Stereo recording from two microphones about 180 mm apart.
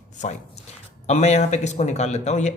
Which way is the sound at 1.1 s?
40° left (ahead or behind).